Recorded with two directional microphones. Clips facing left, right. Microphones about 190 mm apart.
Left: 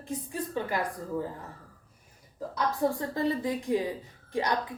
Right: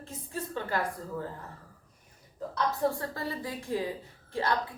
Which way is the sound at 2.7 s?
20° left (ahead or behind).